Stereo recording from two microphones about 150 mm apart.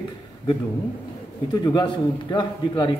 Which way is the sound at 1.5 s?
30° left (ahead or behind).